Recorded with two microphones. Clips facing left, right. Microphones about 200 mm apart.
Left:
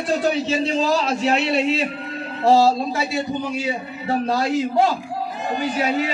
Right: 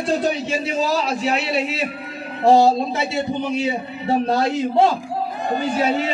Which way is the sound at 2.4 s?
15° right (ahead or behind).